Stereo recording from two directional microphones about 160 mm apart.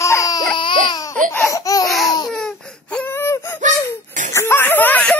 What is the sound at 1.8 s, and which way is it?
Laughter, centre (ahead or behind).